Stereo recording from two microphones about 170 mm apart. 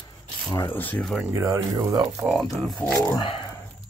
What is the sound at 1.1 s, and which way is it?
Speech, 10° right (ahead or behind).